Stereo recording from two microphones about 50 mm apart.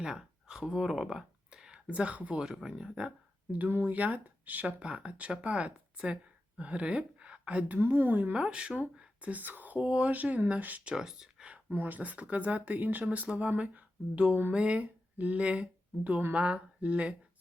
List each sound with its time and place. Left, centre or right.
0.0 s a sound: centre
1.9 s speech: right
2.6 s speech: centre
3.5 s a woman's voice: right
7.8 s speech: right
8.3 s speech: right
10.8 s speech: centre
11.7 s speech: right